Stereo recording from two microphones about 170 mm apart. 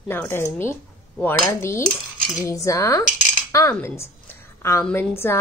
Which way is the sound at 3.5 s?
15° left (ahead or behind).